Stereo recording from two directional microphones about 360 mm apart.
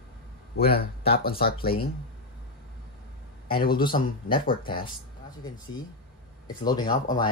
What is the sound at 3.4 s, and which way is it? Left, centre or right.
A man's voice, centre.